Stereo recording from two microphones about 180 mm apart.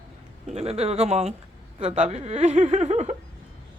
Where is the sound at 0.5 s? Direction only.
35° right (ahead or behind).